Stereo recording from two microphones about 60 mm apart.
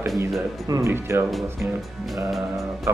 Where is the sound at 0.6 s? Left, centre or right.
Right.